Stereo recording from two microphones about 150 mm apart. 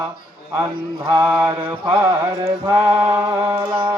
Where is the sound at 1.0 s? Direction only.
15° right (ahead or behind).